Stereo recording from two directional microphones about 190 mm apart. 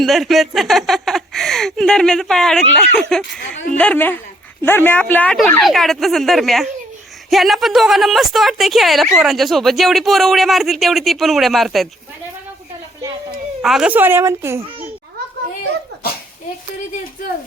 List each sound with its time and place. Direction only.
0.0 s a woman's voice: centre (ahead or behind)
13.6 s a woman's voice: 5° right (ahead or behind)